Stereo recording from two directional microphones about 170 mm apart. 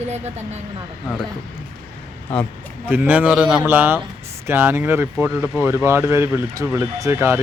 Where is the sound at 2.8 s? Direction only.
10° right (ahead or behind).